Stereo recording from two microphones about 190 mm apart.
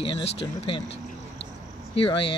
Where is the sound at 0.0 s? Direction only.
30° left (ahead or behind).